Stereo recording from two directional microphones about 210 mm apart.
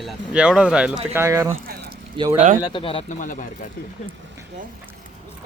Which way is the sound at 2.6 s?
25° left (ahead or behind).